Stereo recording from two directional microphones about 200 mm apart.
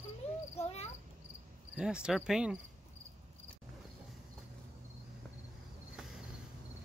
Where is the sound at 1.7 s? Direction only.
5° right (ahead or behind).